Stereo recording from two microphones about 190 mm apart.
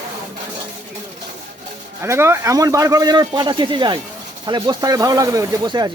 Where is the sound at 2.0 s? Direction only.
15° right (ahead or behind).